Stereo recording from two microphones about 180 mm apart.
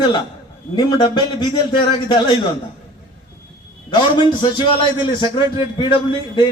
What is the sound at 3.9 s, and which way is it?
A man's voice, 25° left (ahead or behind).